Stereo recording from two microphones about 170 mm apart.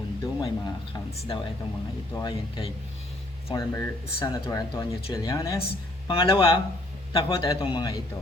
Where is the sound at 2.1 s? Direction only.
25° left (ahead or behind).